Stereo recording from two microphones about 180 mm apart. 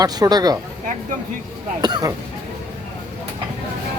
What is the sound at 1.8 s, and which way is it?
Speech, 20° right (ahead or behind).